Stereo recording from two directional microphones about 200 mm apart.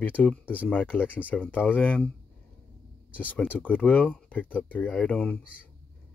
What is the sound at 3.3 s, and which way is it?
Speech, 5° left (ahead or behind).